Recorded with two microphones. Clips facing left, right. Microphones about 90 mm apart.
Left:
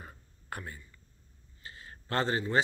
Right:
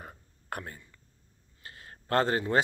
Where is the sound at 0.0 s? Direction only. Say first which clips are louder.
Right 3 dB; 55° right (ahead or behind).